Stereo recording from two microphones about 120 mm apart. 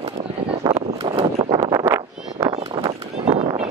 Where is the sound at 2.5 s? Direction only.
55° right (ahead or behind).